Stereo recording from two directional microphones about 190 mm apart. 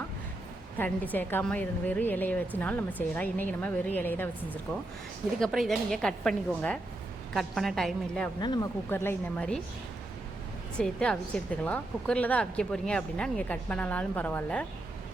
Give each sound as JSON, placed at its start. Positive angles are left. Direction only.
{"t": 0.8, "sound": "speech", "side_deg": 10}
{"t": 5.4, "sound": "a woman's voice", "side_deg": 0}
{"t": 8.4, "sound": "speech", "side_deg": 20}
{"t": 10.8, "sound": "a woman's voice", "side_deg": 5}